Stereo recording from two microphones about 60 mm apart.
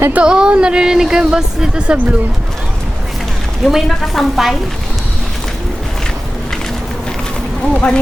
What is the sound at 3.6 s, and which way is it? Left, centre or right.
Speech, centre.